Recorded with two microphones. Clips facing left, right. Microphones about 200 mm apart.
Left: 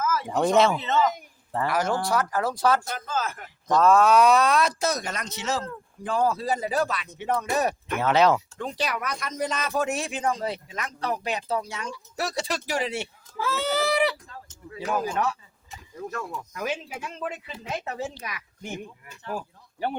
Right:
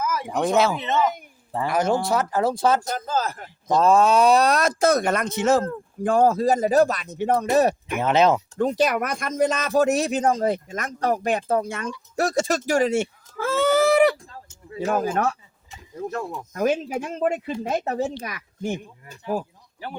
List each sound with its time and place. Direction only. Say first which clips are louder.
0.0 s a sound: even; 15° right (ahead or behind)
0.4 s speech: even; centre (ahead or behind)
0.7 s speech: right 1 dB; 20° right (ahead or behind)
2.8 s speech: right 4 dB; 40° right (ahead or behind)
7.9 s speech: right 2 dB; 15° right (ahead or behind)
8.5 s speech: right 9 dB; 45° right (ahead or behind)
14.7 s speech: right 5 dB; 25° right (ahead or behind)
14.9 s speech: right 3 dB; 50° right (ahead or behind)
16.0 s speech: right 5 dB; 25° right (ahead or behind)
16.5 s speech: right 12 dB; 45° right (ahead or behind)